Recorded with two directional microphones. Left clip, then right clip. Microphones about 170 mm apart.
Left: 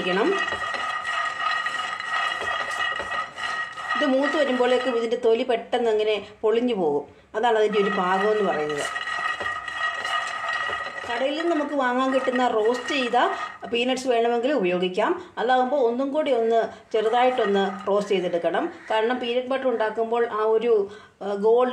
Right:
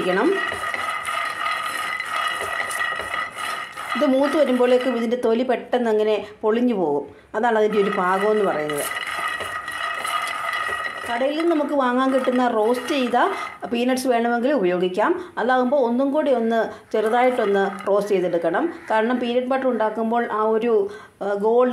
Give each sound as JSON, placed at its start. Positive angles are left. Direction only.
{"t": 0.0, "sound": "stir", "side_deg": -25}
{"t": 4.0, "sound": "speech", "side_deg": -30}
{"t": 11.1, "sound": "speech", "side_deg": -30}